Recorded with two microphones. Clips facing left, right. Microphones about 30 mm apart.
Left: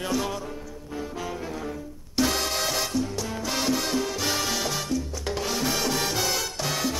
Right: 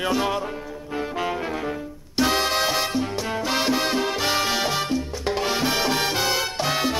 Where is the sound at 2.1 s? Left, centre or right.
Right.